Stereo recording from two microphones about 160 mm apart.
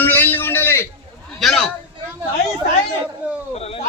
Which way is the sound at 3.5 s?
40° left (ahead or behind).